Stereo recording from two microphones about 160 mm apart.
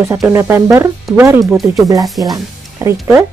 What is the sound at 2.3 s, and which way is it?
Music, 20° right (ahead or behind).